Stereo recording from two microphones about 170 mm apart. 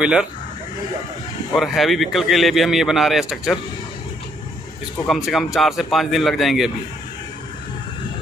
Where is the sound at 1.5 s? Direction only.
Centre (ahead or behind).